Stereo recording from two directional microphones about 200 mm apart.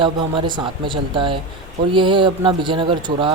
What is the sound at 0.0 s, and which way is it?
A man's voice, 25° right (ahead or behind).